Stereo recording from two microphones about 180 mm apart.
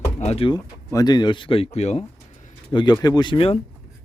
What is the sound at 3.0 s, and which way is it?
Speech, 25° left (ahead or behind).